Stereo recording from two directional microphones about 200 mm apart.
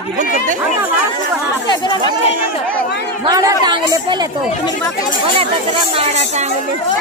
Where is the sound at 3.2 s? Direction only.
20° right (ahead or behind).